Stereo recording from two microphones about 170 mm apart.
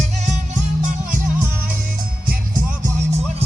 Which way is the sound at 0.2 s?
45° right (ahead or behind).